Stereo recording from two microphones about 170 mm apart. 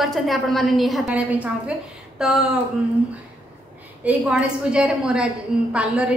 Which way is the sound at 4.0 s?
5° right (ahead or behind).